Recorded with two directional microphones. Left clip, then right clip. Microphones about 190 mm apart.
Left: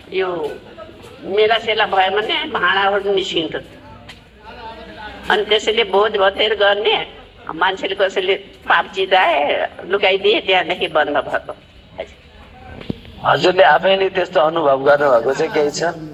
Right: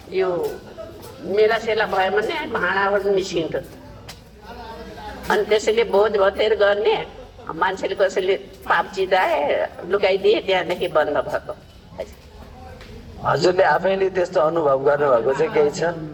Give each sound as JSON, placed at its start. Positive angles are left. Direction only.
{"t": 1.4, "sound": "a woman's voice", "side_deg": 35}
{"t": 5.3, "sound": "a woman's voice", "side_deg": 35}
{"t": 13.2, "sound": "a man's voice", "side_deg": 40}